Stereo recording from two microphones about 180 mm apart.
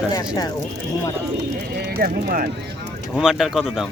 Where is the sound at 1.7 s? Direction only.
65° right (ahead or behind).